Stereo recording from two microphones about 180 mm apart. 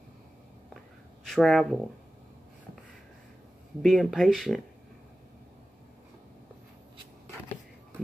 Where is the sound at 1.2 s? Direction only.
Centre (ahead or behind).